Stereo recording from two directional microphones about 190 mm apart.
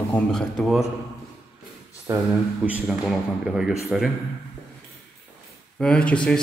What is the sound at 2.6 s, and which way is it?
Speech, 5° right (ahead or behind).